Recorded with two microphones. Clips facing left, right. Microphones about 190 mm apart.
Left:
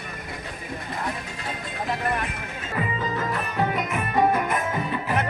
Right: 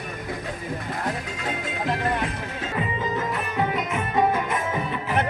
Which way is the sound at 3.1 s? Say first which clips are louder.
Even; 20° right (ahead or behind).